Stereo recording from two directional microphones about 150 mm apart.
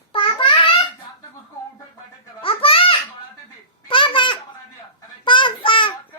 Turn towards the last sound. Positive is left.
turn(degrees=35)  # may be behind; listen again after turning